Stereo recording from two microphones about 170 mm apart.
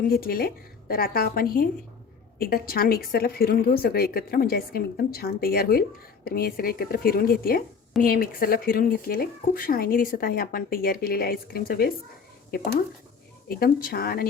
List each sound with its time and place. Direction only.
0.0 s speech: 60° left (ahead or behind)
13.5 s speech: 60° left (ahead or behind)